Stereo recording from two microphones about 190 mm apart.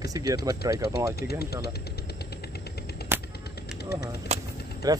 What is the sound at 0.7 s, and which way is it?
Speech, 55° left (ahead or behind).